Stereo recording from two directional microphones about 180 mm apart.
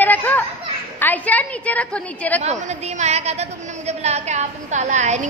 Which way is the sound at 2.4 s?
40° right (ahead or behind).